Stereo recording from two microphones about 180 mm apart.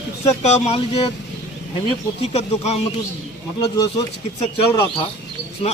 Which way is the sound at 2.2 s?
35° left (ahead or behind).